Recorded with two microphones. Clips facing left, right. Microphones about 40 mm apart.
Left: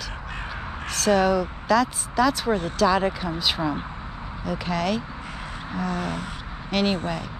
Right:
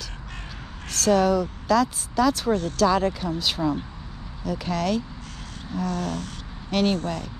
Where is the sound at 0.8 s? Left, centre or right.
Centre.